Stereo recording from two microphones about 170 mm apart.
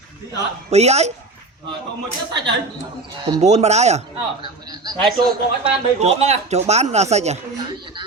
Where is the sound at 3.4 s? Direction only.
40° right (ahead or behind).